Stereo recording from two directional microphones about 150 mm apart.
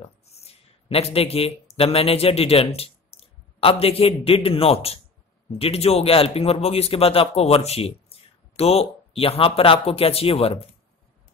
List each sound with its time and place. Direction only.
0.0 s a man's voice: 45° left (ahead or behind)